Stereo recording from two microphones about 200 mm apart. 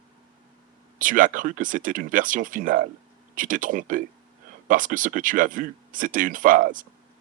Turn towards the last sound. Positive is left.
turn(degrees=-40)  # may be behind; listen again after turning